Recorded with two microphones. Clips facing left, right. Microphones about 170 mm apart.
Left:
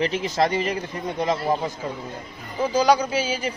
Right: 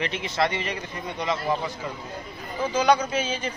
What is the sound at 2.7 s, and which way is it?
Speech, 35° left (ahead or behind).